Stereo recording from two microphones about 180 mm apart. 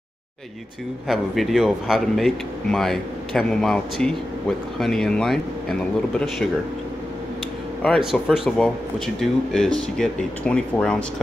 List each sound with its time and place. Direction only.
1.0 s speech: centre (ahead or behind)
7.8 s speech: centre (ahead or behind)